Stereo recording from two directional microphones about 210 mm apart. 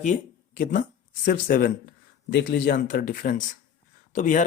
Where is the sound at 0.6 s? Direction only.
40° left (ahead or behind).